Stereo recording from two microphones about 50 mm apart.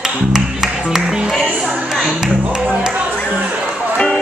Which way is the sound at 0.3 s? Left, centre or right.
Centre.